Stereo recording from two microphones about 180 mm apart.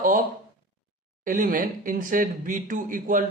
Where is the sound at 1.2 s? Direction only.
50° right (ahead or behind).